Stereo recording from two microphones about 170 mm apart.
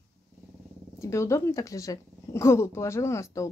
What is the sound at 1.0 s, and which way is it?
A woman's voice, 15° left (ahead or behind).